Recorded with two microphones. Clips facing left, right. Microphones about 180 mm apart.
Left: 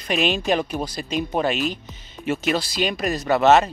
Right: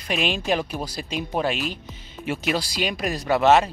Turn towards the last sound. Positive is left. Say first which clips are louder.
# left 2 dB
turn(degrees=-10)  # may be behind; listen again after turning